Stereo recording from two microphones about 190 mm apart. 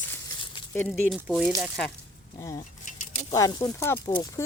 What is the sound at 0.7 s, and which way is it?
Speech, 5° left (ahead or behind).